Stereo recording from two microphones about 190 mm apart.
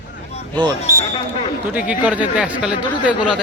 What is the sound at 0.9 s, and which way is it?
Speech, 25° left (ahead or behind).